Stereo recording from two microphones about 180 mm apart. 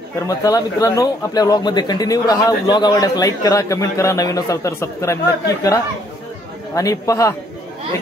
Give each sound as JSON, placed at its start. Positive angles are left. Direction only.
{"t": 0.4, "sound": "a man's voice", "side_deg": 20}